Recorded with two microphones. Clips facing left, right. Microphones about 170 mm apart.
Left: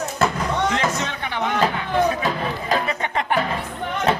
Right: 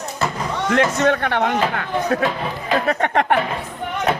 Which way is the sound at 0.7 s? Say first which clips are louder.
Right 7 dB; 55° right (ahead or behind).